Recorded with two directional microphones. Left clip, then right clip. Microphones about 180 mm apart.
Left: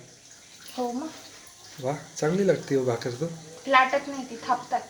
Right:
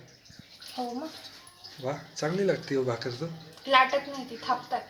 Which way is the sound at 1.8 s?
10° left (ahead or behind).